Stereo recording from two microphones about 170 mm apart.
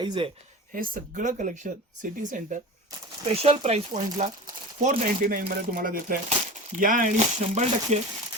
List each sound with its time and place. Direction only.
0.0 s speech: 25° right (ahead or behind)
0.7 s speech: 55° right (ahead or behind)
3.3 s speech: 35° right (ahead or behind)